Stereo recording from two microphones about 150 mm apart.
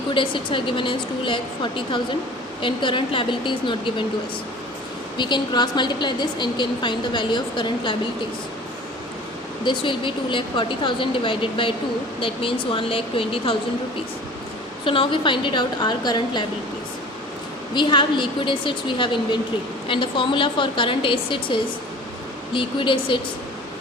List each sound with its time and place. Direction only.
0.1 s a woman's voice: 35° left (ahead or behind)
5.1 s a woman's voice: 30° left (ahead or behind)
9.6 s a woman's voice: 35° left (ahead or behind)
14.8 s a woman's voice: 35° left (ahead or behind)
17.7 s a woman's voice: 30° left (ahead or behind)